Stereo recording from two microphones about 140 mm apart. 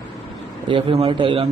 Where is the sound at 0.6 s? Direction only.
40° right (ahead or behind).